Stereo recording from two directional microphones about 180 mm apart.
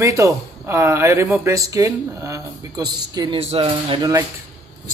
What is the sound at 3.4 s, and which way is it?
Speech, 35° right (ahead or behind).